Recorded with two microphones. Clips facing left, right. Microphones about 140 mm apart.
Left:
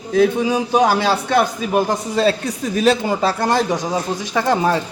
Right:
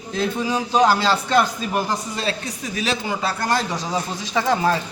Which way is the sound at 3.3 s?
20° left (ahead or behind).